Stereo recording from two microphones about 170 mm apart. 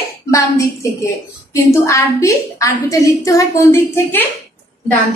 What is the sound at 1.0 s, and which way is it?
A woman's voice, 15° left (ahead or behind).